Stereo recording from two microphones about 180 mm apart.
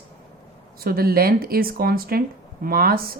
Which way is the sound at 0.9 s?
55° right (ahead or behind).